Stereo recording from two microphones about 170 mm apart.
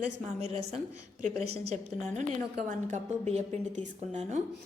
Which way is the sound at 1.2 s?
40° right (ahead or behind).